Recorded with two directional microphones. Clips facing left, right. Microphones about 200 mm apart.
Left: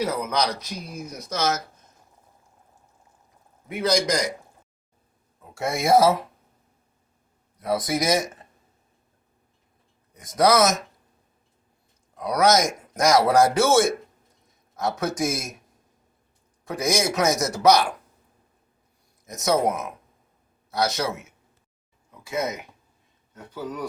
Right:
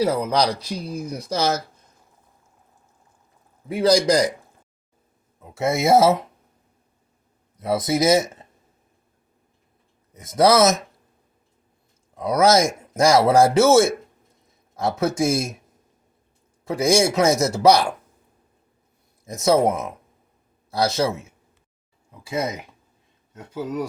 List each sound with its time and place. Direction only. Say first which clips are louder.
0.0 s speech: right 5 dB; 30° right (ahead or behind)
3.7 s speech: right 5 dB; 30° right (ahead or behind)
5.4 s speech: right 5 dB; 20° right (ahead or behind)
7.6 s speech: right 4 dB; 25° right (ahead or behind)
10.2 s speech: right 3 dB; 25° right (ahead or behind)
12.1 s speech: right 3 dB; 25° right (ahead or behind)
16.6 s speech: right 6 dB; 30° right (ahead or behind)
19.2 s speech: right 4 dB; 30° right (ahead or behind)